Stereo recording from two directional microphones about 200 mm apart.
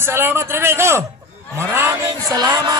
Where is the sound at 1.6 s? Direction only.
15° right (ahead or behind).